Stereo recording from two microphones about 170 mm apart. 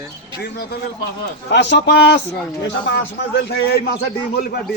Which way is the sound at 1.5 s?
85° left.